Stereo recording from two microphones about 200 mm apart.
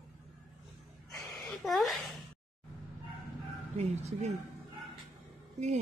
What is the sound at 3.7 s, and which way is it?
Speech, 35° right (ahead or behind).